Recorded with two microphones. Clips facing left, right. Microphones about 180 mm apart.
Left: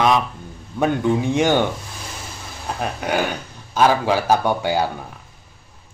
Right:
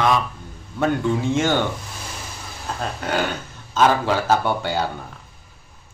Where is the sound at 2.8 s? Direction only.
15° left (ahead or behind).